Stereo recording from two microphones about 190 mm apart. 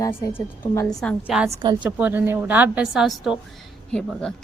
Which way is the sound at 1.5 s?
25° right (ahead or behind).